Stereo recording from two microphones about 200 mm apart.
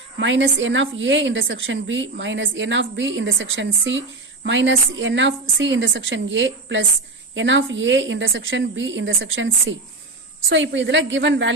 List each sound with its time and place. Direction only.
0.2 s a woman's voice: 65° right (ahead or behind)